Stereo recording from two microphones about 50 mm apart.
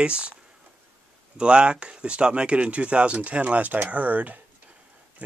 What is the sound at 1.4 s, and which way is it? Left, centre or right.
Speech, centre.